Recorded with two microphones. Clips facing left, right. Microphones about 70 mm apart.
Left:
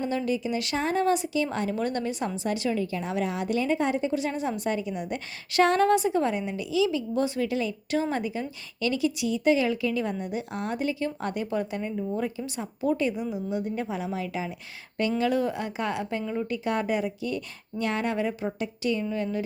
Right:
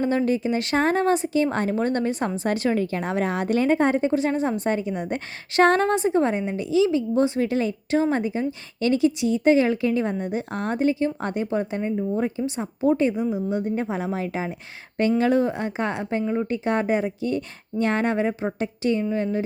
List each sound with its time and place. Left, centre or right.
0.0 s speech: right